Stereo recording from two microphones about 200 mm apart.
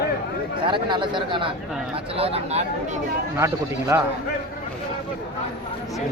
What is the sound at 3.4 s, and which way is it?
Speech, 15° right (ahead or behind).